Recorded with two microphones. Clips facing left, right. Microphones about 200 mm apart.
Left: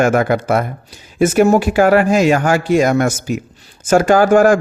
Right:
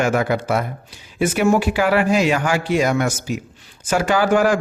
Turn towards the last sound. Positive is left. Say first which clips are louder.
# left 6 dB
turn(degrees=45)  # may be behind; listen again after turning